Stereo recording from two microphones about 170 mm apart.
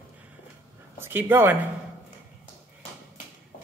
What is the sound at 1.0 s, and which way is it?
Speech, 10° right (ahead or behind).